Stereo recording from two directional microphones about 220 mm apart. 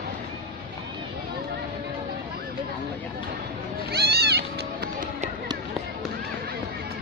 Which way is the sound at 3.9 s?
45° right (ahead or behind).